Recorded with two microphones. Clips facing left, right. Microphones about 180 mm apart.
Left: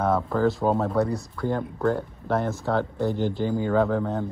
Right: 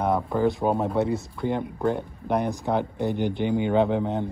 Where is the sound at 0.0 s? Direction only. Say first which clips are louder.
Even; 15° right (ahead or behind).